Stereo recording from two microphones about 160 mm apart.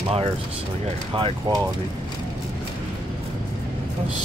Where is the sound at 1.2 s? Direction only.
30° right (ahead or behind).